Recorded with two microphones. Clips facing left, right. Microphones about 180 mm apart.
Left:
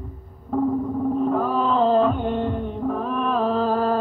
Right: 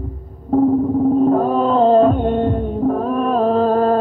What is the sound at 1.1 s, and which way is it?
Music, 40° right (ahead or behind).